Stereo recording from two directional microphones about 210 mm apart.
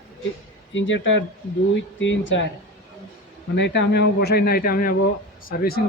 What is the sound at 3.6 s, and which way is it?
Speech, 55° left (ahead or behind).